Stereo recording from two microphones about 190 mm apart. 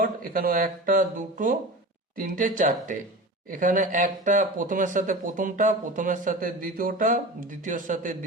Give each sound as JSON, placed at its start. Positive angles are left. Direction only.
{"t": 0.0, "sound": "speech", "side_deg": -50}